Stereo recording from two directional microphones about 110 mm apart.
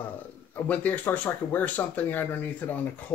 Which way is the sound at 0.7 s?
15° left (ahead or behind).